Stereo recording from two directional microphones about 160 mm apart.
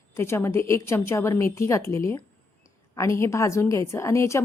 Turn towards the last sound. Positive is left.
turn(degrees=15)  # may be behind; listen again after turning